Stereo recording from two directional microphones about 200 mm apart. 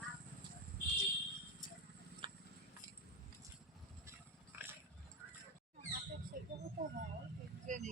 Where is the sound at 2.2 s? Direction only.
25° right (ahead or behind).